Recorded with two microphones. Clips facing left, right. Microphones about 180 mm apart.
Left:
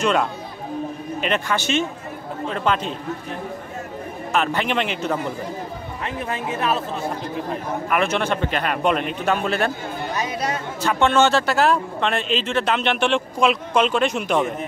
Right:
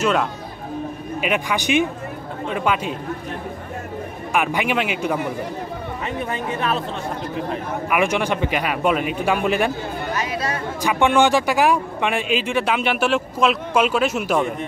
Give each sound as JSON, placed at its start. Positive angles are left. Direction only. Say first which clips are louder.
{"t": 0.0, "sound": "a man's voice", "louder": "even", "side_deg": 0}
{"t": 4.3, "sound": "a man's voice", "louder": "right 1 dB", "side_deg": -10}
{"t": 6.0, "sound": "speech", "louder": "even", "side_deg": 0}
{"t": 7.9, "sound": "a man's voice", "louder": "right 1 dB", "side_deg": -15}
{"t": 10.1, "sound": "speech", "louder": "left 1 dB", "side_deg": 20}
{"t": 10.8, "sound": "a man's voice", "louder": "right 1 dB", "side_deg": -15}